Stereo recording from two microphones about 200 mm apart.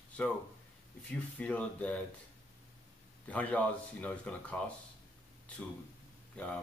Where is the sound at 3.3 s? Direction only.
5° left (ahead or behind).